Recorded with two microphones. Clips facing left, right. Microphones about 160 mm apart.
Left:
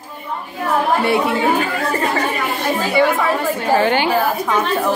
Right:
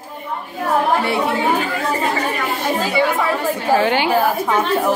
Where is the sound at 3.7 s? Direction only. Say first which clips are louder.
Even; 5° right (ahead or behind).